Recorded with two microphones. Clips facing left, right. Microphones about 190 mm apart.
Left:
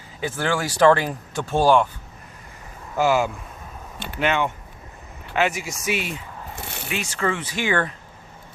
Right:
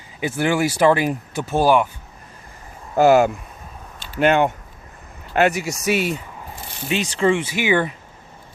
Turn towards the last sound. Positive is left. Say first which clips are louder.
# right 4 dB
turn(degrees=-15)  # may be behind; listen again after turning